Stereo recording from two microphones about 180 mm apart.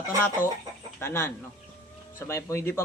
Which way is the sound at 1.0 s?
15° left (ahead or behind).